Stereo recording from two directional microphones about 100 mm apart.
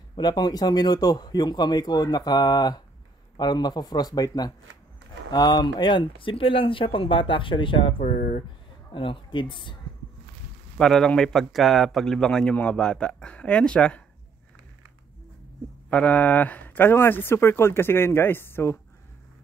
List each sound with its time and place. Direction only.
0.1 s a man's voice: 45° left (ahead or behind); by 8.5 s 65° left (ahead or behind)
8.9 s a man's voice: 55° left (ahead or behind)
10.8 s a man's voice: 5° left (ahead or behind)
15.9 s speech: 15° left (ahead or behind)